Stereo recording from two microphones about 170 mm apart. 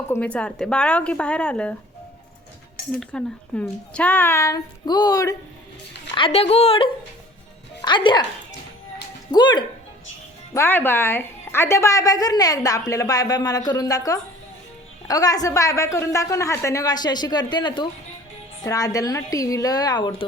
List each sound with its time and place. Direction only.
0.1 s speech: 10° left (ahead or behind)
3.0 s speech: 5° left (ahead or behind)
6.1 s speech: 35° left (ahead or behind)
9.3 s a woman's voice: 25° left (ahead or behind)
10.5 s a woman's voice: 15° left (ahead or behind)